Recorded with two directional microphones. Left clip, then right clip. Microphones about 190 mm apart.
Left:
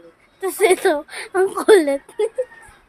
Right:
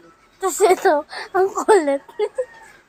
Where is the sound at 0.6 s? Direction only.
10° left (ahead or behind).